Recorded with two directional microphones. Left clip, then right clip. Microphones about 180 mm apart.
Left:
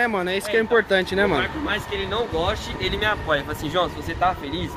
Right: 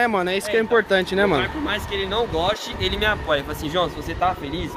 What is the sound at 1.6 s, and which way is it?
Speech, 65° right (ahead or behind).